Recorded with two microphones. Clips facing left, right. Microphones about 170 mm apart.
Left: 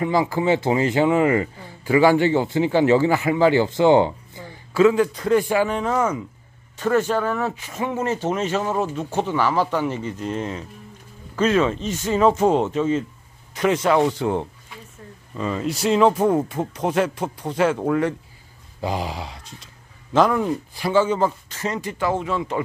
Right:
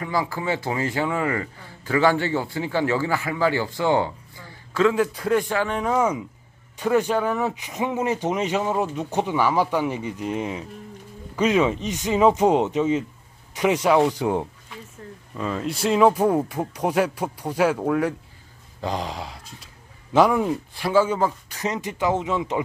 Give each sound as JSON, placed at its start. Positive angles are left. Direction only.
{"t": 0.0, "sound": "a man's voice", "side_deg": 20}
{"t": 4.9, "sound": "speech", "side_deg": -5}
{"t": 5.4, "sound": "speech", "side_deg": 10}
{"t": 5.8, "sound": "speech", "side_deg": -10}
{"t": 15.3, "sound": "speech", "side_deg": 0}
{"t": 20.1, "sound": "speech", "side_deg": -10}